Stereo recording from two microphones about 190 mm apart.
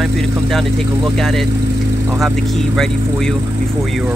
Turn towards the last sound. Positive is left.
turn(degrees=0)  # may be behind; listen again after turning